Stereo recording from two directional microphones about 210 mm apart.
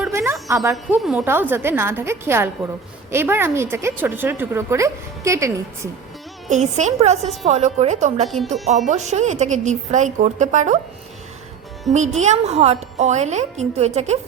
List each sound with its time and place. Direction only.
0.1 s a sound: 15° right (ahead or behind)
0.4 s a woman's voice: 15° right (ahead or behind)
6.5 s a woman's voice: 35° right (ahead or behind)
11.9 s a woman's voice: 35° right (ahead or behind)